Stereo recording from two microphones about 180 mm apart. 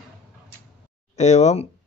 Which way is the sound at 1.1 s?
40° left (ahead or behind).